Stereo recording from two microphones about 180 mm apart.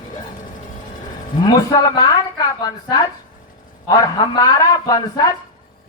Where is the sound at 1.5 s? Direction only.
20° left (ahead or behind).